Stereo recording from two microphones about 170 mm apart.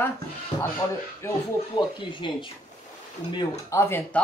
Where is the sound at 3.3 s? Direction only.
15° left (ahead or behind).